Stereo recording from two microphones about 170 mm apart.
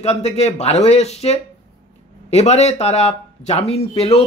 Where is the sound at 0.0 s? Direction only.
40° left (ahead or behind).